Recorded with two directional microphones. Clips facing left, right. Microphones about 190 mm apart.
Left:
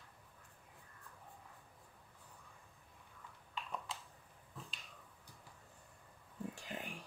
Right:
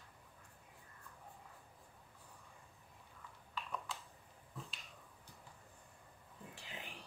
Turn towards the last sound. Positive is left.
turn(degrees=45)  # may be behind; listen again after turning